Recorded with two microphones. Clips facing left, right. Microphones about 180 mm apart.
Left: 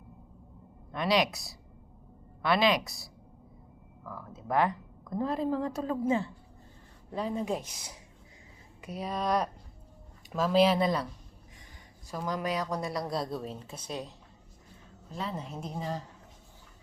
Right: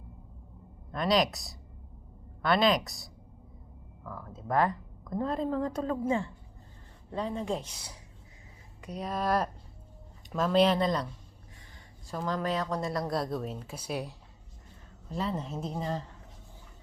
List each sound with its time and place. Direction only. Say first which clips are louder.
0.9 s speech: right 1 dB; centre (ahead or behind)
6.1 s a woman's voice: left 3 dB; 25° left (ahead or behind)
7.1 s speech: left 1 dB; 10° left (ahead or behind)
8.9 s speech: even; centre (ahead or behind)
12.1 s speech: right 1 dB; 10° left (ahead or behind)
12.8 s speech: right 2 dB; centre (ahead or behind)
15.1 s speech: right 4 dB; centre (ahead or behind)